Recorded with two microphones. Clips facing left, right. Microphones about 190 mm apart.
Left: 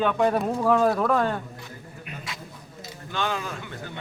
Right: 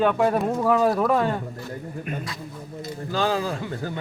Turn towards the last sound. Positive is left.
turn(degrees=-35)  # may be behind; listen again after turning